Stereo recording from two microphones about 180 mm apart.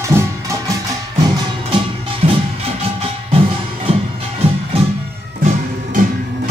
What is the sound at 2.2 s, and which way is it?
Music, 35° right (ahead or behind).